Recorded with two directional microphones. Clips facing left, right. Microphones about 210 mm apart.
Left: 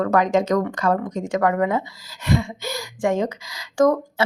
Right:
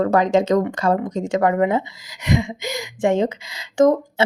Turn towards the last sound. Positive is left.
turn(degrees=-25)  # may be behind; listen again after turning